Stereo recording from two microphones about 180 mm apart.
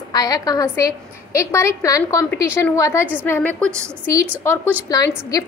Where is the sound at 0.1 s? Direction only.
20° left (ahead or behind).